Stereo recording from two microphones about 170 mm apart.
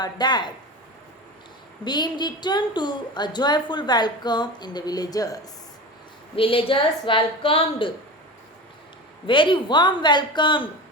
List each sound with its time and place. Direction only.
0.0 s a woman's voice: 25° left (ahead or behind)
1.8 s a woman's voice: 25° left (ahead or behind)
6.3 s a woman's voice: 30° left (ahead or behind)
9.2 s a woman's voice: 30° left (ahead or behind)